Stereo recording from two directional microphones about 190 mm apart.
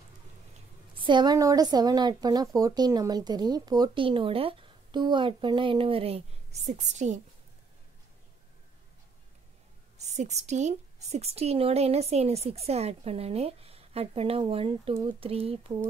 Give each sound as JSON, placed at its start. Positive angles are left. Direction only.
{"t": 1.0, "sound": "a woman's voice", "side_deg": -25}
{"t": 10.0, "sound": "a woman's voice", "side_deg": -35}